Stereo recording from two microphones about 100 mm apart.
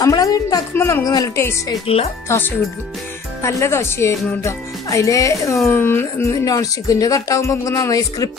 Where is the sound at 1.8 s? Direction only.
75° left (ahead or behind).